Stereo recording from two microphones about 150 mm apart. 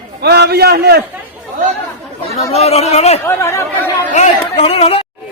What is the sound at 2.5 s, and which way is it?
Speech, 45° left (ahead or behind).